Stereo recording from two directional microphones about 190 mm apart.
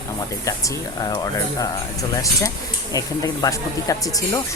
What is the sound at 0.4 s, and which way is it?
Speech, 15° left (ahead or behind).